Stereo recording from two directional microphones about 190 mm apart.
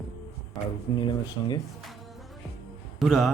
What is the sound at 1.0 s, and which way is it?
Speech, 20° left (ahead or behind).